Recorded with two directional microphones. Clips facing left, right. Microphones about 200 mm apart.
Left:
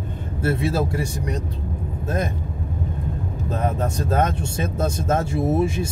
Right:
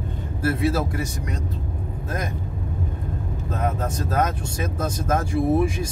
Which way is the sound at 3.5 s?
30° left (ahead or behind).